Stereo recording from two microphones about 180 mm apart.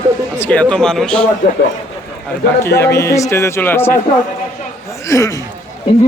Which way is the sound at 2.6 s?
15° left (ahead or behind).